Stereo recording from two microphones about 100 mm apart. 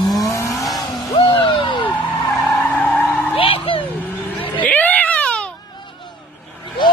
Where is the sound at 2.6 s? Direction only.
15° left (ahead or behind).